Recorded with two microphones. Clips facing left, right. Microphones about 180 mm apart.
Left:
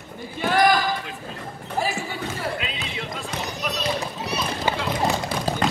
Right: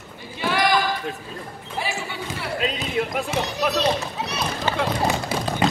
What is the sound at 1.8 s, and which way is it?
Basketball bounce, 45° left (ahead or behind).